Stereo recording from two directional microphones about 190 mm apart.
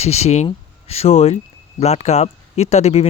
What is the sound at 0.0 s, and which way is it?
Speech, 35° left (ahead or behind).